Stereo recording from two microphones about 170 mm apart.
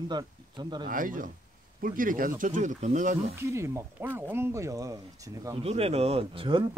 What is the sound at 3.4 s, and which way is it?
Speech, 15° right (ahead or behind).